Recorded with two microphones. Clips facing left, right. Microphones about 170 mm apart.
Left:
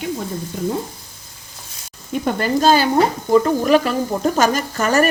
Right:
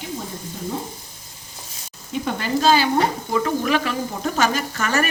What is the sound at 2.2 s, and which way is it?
Speech, 45° left (ahead or behind).